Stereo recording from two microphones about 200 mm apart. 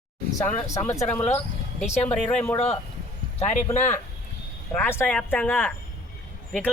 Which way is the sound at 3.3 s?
35° left (ahead or behind).